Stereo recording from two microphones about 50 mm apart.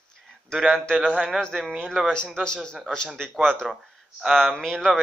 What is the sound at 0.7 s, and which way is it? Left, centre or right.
A man's voice, centre.